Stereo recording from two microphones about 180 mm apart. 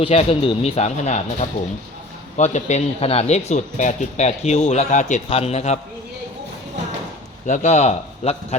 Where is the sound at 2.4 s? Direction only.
40° left (ahead or behind).